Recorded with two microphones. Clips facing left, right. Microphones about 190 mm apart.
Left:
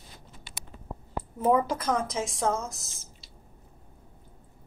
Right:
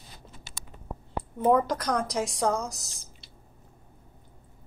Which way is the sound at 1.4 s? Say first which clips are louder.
Right 1 dB; 5° left (ahead or behind).